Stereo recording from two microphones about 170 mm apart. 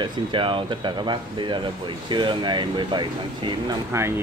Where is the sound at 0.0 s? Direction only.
30° right (ahead or behind).